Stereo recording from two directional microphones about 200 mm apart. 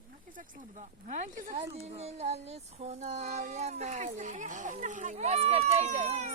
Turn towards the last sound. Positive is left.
turn(degrees=-35)  # may be behind; listen again after turning